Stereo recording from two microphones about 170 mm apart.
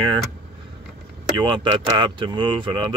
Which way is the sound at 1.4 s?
30° right (ahead or behind).